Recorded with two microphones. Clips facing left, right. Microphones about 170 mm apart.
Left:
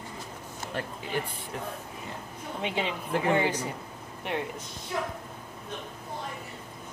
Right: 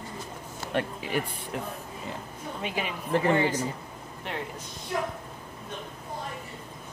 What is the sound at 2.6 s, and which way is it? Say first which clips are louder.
Speech: left 2 dB; 25° left (ahead or behind).